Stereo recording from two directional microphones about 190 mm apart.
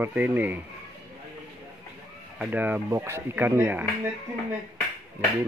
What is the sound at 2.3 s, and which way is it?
Speech, 10° right (ahead or behind).